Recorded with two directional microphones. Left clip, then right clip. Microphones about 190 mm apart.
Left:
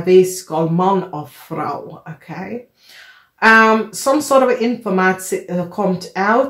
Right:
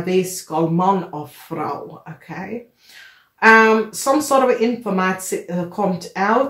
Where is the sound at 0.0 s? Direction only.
35° left (ahead or behind).